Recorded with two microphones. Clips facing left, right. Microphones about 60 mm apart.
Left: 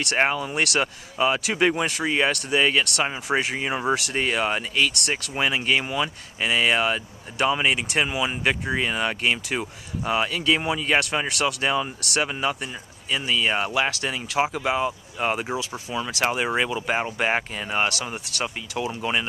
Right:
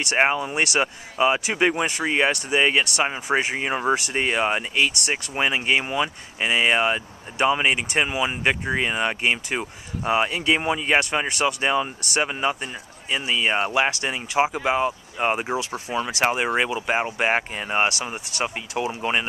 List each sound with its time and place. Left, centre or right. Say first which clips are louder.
0.1 s speech: right 3 dB; centre
4.2 s speech: right 2 dB; centre
11.0 s speech: right 1 dB; centre
17.9 s speech: right 1 dB; centre